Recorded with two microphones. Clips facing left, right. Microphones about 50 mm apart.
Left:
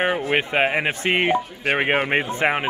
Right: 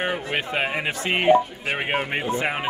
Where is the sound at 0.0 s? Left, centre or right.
Left.